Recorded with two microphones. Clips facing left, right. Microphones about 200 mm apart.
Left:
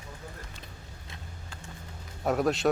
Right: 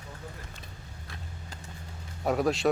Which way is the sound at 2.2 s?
Centre (ahead or behind).